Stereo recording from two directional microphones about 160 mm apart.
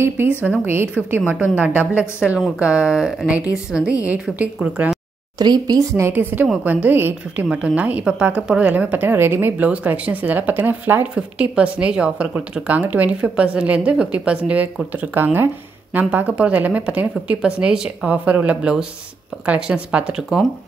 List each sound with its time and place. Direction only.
0.4 s speech: 15° right (ahead or behind)
5.4 s speech: 25° right (ahead or behind); by 20.4 s 5° right (ahead or behind)